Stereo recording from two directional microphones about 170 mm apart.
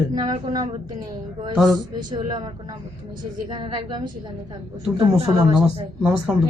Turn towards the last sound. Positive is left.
turn(degrees=-10)  # may be behind; listen again after turning